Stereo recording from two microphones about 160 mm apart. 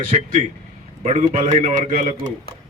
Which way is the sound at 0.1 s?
45° right (ahead or behind).